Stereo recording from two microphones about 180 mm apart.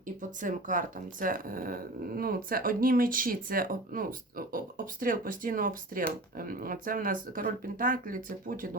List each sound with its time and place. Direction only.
0.2 s speech: 45° right (ahead or behind)